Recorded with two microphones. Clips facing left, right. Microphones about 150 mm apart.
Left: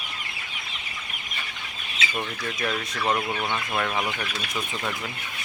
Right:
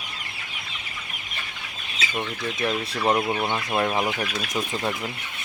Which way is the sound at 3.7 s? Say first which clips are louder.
Right 5 dB; 25° right (ahead or behind).